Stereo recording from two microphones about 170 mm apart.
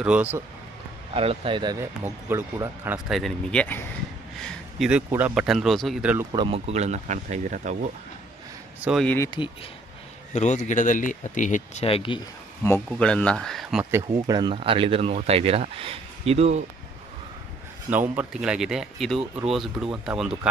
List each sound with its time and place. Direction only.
0.0 s speech: 10° right (ahead or behind)
1.1 s speech: 35° right (ahead or behind); by 3.0 s 15° right (ahead or behind)
3.1 s speech: centre (ahead or behind)
4.4 s speech: 5° right (ahead or behind)
6.3 s speech: 30° right (ahead or behind)
9.0 s speech: 10° left (ahead or behind)
10.3 s speech: 45° left (ahead or behind)
12.6 s speech: 10° left (ahead or behind)
14.1 s speech: 25° right (ahead or behind); by 16.6 s 40° right (ahead or behind)
18.1 s speech: 5° right (ahead or behind)